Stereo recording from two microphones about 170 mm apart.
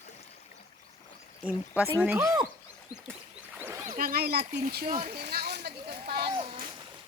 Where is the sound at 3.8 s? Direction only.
55° right (ahead or behind).